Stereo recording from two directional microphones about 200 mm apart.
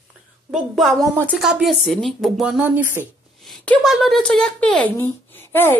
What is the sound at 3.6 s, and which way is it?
Speech, 5° left (ahead or behind).